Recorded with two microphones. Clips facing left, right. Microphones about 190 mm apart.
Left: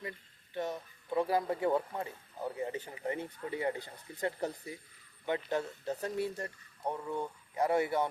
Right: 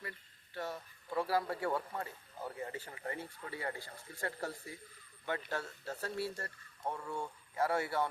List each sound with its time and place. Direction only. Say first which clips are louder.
0.5 s speech: left 5 dB; 20° left (ahead or behind)